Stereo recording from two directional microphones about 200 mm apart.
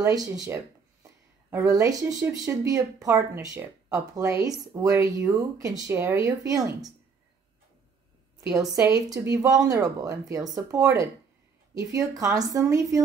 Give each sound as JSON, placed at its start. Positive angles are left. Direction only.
{"t": 0.0, "sound": "speech", "side_deg": -15}
{"t": 9.1, "sound": "speech", "side_deg": -15}